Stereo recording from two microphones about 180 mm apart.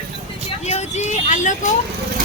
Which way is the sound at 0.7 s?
40° left (ahead or behind).